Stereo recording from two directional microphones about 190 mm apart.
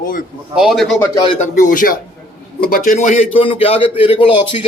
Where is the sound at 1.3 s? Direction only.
40° left (ahead or behind).